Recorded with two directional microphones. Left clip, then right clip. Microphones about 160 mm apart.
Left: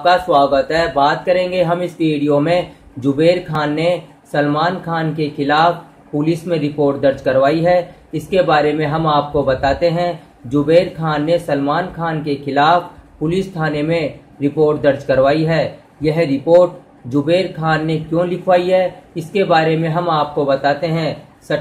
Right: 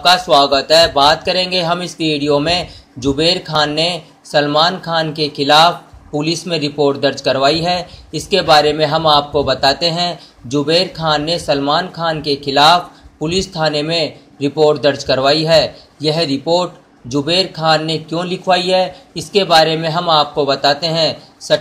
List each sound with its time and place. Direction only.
0.0 s speech: 20° right (ahead or behind)